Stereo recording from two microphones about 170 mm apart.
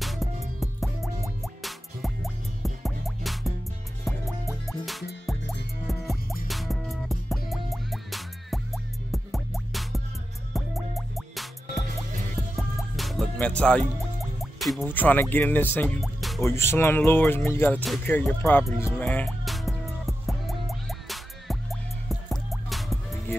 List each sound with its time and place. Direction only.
0.0 s music: centre (ahead or behind)
5.9 s music: centre (ahead or behind)
14.9 s speech: 10° left (ahead or behind)
16.0 s music: centre (ahead or behind)
16.4 s speech: 15° left (ahead or behind)
18.9 s music: 10° left (ahead or behind)